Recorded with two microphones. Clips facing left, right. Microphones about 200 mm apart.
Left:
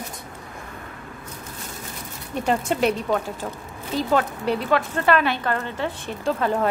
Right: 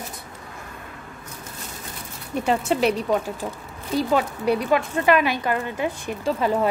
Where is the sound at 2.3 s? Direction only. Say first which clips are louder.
Right 1 dB; 5° right (ahead or behind).